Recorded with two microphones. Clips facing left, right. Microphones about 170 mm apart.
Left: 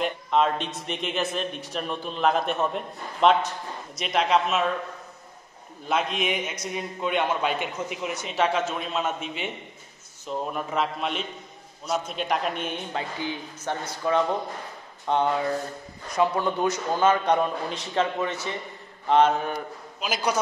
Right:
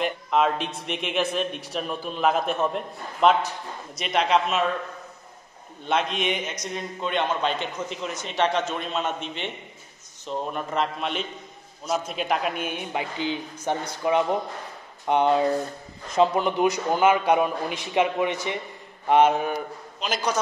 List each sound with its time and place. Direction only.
0.0 s a man's voice: 5° right (ahead or behind)
5.9 s a man's voice: centre (ahead or behind)
20.0 s a man's voice: 10° left (ahead or behind)